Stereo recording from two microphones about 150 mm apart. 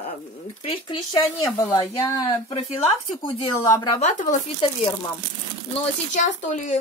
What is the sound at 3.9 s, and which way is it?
Speech, 50° left (ahead or behind).